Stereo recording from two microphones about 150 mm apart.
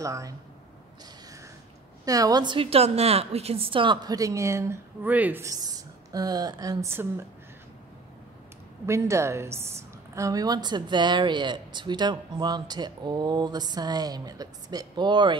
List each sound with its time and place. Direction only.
0.0 s a woman's voice: 20° right (ahead or behind)
2.0 s a woman's voice: 25° right (ahead or behind)
8.8 s a woman's voice: 20° right (ahead or behind)